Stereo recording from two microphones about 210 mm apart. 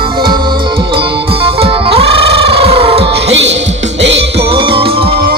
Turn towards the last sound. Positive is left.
turn(degrees=-25)  # may be behind; listen again after turning